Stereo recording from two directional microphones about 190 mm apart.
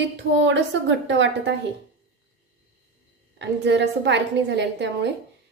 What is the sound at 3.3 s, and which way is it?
A woman's voice, 65° right (ahead or behind).